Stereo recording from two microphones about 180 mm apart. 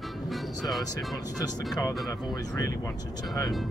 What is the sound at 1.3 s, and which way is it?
Speech, 20° left (ahead or behind).